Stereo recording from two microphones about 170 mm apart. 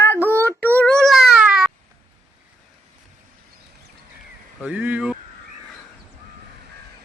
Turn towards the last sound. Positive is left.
turn(degrees=-10)  # may be behind; listen again after turning